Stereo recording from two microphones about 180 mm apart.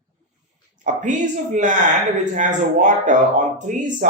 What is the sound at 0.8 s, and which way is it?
Speech, 45° right (ahead or behind).